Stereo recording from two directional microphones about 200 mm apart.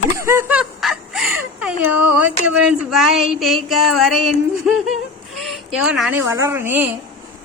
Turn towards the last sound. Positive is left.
turn(degrees=-10)  # may be behind; listen again after turning